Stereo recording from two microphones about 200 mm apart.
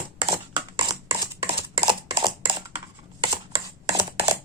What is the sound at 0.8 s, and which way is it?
Typing, 25° right (ahead or behind).